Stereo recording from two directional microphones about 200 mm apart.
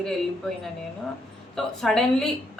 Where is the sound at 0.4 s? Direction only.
Centre (ahead or behind).